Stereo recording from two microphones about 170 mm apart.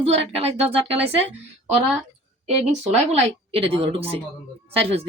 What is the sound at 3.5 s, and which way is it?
Speech, 35° right (ahead or behind).